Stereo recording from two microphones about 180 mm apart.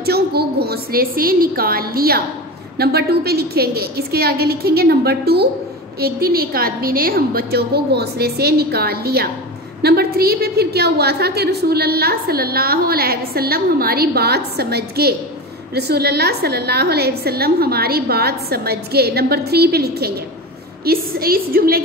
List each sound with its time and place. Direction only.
0.0 s a woman's voice: 60° right (ahead or behind)